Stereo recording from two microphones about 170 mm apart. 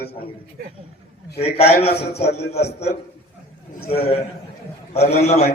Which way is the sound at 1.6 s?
35° left (ahead or behind).